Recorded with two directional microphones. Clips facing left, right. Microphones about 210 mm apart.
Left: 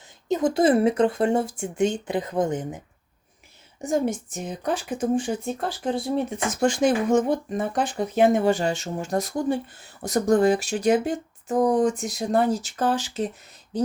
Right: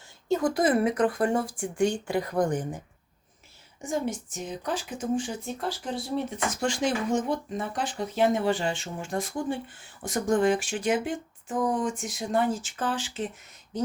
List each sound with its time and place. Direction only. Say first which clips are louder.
0.3 s speech: left 4 dB; 20° left (ahead or behind)
3.8 s a woman's voice: left 6 dB; 40° left (ahead or behind)